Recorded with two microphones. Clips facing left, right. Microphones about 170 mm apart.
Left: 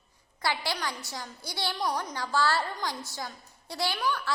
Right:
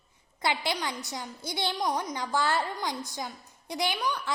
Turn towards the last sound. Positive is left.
turn(degrees=-20)  # may be behind; listen again after turning